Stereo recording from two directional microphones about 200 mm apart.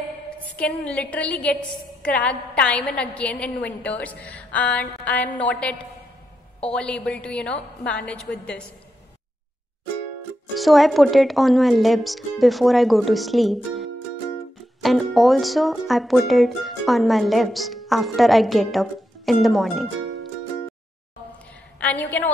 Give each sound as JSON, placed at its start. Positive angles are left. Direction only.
{"t": 0.5, "sound": "a woman's voice", "side_deg": 5}
{"t": 10.5, "sound": "speech", "side_deg": 0}
{"t": 20.0, "sound": "music", "side_deg": -75}
{"t": 21.7, "sound": "a sound", "side_deg": 5}